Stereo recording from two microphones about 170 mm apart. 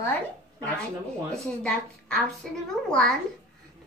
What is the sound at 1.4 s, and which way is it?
A child's voice, 5° left (ahead or behind).